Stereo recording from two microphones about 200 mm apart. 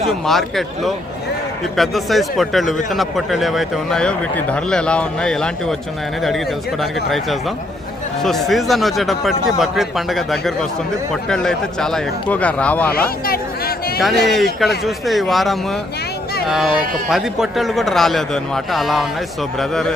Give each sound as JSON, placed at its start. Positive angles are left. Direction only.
{"t": 0.1, "sound": "a man's voice", "side_deg": 0}
{"t": 13.2, "sound": "a sound", "side_deg": 50}
{"t": 14.0, "sound": "a man's voice", "side_deg": 0}